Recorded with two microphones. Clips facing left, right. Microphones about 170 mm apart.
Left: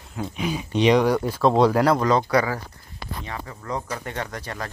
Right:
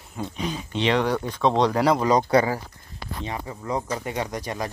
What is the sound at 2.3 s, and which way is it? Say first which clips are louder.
Speech: right 2 dB; 30° right (ahead or behind).